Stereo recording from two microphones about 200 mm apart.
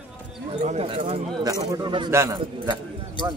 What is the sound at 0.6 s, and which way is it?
A man's voice, 35° right (ahead or behind).